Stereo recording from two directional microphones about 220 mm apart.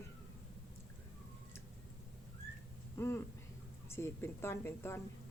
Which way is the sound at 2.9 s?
10° left (ahead or behind).